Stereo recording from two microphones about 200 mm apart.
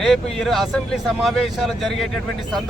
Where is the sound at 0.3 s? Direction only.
Centre (ahead or behind).